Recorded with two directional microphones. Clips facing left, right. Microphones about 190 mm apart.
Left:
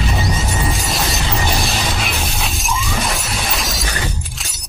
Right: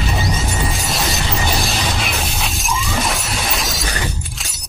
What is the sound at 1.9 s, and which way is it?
Shatter, centre (ahead or behind).